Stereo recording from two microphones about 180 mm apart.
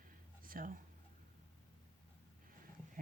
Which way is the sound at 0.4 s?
50° right (ahead or behind).